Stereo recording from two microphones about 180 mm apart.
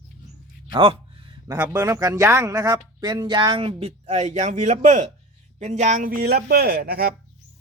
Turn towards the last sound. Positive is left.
turn(degrees=-60)  # may be behind; listen again after turning